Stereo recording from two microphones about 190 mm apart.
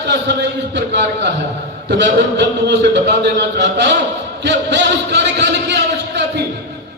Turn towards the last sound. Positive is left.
turn(degrees=-65)  # may be behind; listen again after turning